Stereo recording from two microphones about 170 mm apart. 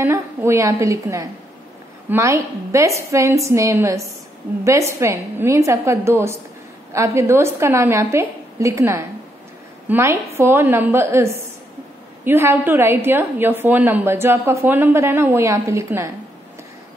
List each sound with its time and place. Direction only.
0.0 s a woman's voice: 15° right (ahead or behind)